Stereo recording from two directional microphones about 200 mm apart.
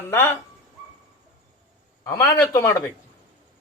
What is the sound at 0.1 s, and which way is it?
Speech, 10° left (ahead or behind).